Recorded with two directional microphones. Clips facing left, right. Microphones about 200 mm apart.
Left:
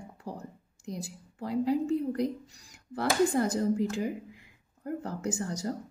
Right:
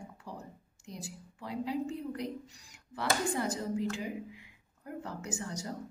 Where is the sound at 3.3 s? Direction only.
45° left (ahead or behind).